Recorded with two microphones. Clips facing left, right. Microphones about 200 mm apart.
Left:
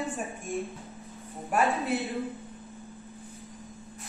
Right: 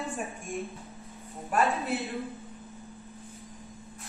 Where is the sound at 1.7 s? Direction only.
30° left (ahead or behind).